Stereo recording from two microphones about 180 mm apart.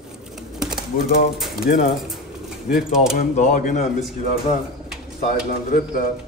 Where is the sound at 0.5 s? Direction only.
5° right (ahead or behind).